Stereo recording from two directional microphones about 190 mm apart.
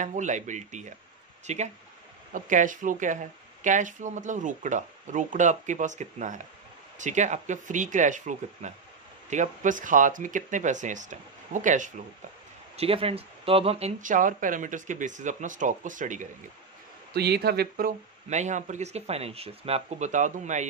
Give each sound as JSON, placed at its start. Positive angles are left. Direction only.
{"t": 0.0, "sound": "speech", "side_deg": -40}
{"t": 12.7, "sound": "speech", "side_deg": -30}
{"t": 17.1, "sound": "speech", "side_deg": -60}